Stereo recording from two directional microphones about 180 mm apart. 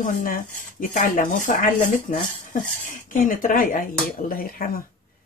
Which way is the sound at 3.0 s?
45° left (ahead or behind).